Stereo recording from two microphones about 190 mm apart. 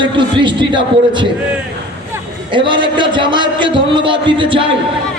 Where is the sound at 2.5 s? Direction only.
25° right (ahead or behind).